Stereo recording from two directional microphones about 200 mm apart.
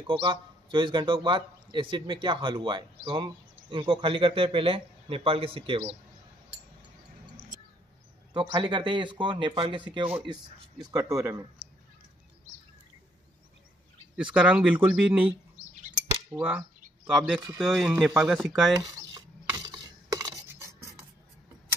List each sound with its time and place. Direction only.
0.0 s a man's voice: 25° right (ahead or behind)
8.3 s a man's voice: 20° right (ahead or behind)
14.1 s speech: 5° right (ahead or behind)
16.3 s speech: 10° right (ahead or behind)
19.4 s filing: 20° right (ahead or behind)
20.2 s a sound: 15° right (ahead or behind)